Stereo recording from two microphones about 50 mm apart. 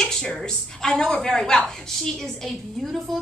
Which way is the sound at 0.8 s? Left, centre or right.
Centre.